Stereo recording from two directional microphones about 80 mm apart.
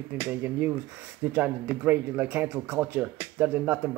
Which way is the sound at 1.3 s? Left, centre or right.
Right.